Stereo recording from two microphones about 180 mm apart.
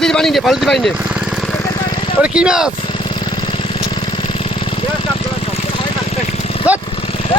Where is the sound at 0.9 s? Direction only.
5° right (ahead or behind).